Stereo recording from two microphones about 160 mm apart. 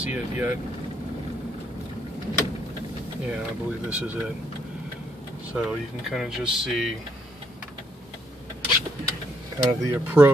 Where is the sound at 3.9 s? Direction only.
10° right (ahead or behind).